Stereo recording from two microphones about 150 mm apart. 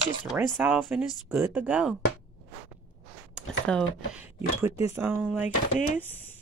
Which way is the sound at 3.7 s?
5° left (ahead or behind).